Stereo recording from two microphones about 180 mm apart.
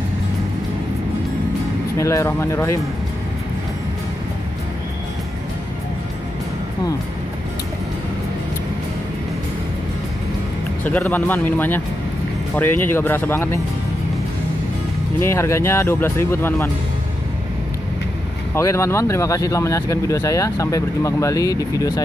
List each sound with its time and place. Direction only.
2.0 s speech: 15° left (ahead or behind)
10.8 s speech: 10° left (ahead or behind)
15.1 s speech: 15° left (ahead or behind)
18.5 s speech: 15° left (ahead or behind)